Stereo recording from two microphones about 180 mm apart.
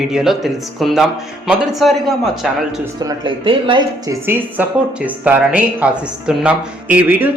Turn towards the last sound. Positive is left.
turn(degrees=-10)  # may be behind; listen again after turning